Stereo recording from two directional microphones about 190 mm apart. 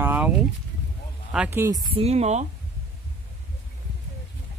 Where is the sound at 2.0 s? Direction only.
35° right (ahead or behind).